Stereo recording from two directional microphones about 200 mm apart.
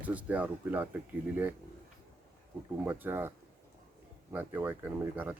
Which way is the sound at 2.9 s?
10° right (ahead or behind).